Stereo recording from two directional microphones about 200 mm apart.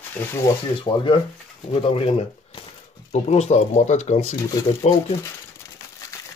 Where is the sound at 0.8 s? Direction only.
25° left (ahead or behind).